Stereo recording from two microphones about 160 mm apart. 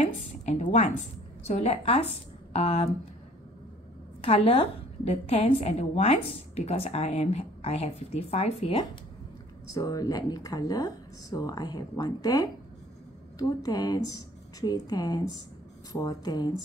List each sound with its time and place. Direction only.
0.0 s a woman's voice: 45° left (ahead or behind)
4.2 s a woman's voice: 40° left (ahead or behind)
9.7 s a woman's voice: 25° left (ahead or behind)